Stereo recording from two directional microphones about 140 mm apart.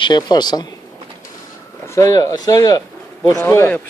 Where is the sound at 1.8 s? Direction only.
20° left (ahead or behind).